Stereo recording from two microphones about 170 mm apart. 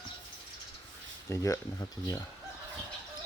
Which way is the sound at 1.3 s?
20° left (ahead or behind).